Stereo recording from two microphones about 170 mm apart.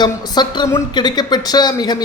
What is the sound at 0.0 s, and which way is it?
Speech, 25° left (ahead or behind).